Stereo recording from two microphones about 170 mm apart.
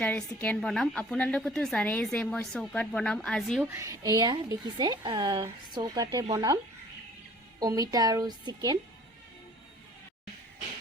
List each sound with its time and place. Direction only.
0.0 s a woman's voice: 10° left (ahead or behind)
3.6 s a woman's voice: 15° right (ahead or behind)
7.6 s speech: 20° right (ahead or behind)